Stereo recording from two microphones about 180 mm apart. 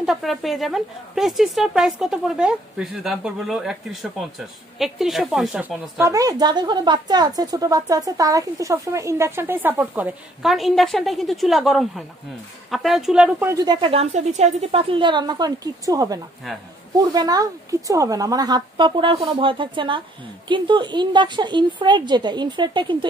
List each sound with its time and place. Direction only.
0.0 s a woman's voice: centre (ahead or behind)
6.0 s a woman's voice: 20° right (ahead or behind)
13.5 s speech: 20° right (ahead or behind)